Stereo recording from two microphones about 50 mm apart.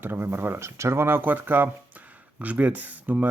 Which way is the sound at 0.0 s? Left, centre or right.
Right.